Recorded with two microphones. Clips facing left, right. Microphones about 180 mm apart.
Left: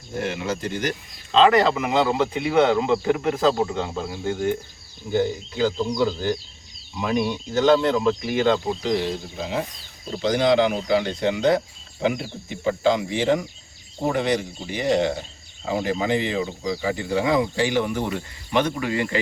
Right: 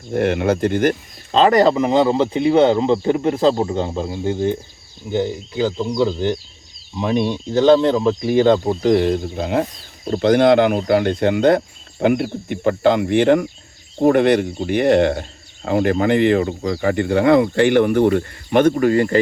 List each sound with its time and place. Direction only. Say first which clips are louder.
0.1 s speech: right 9 dB; 60° right (ahead or behind); by 8.5 s 30° right (ahead or behind)
8.6 s speech: right 8 dB; 50° right (ahead or behind)